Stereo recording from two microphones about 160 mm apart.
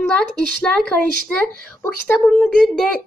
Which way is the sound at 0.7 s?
5° left (ahead or behind).